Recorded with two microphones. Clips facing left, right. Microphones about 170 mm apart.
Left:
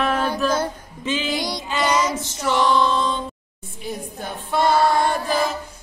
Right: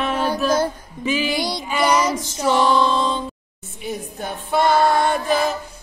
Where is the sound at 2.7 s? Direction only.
20° right (ahead or behind).